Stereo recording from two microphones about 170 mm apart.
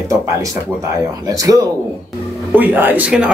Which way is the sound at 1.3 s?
20° right (ahead or behind).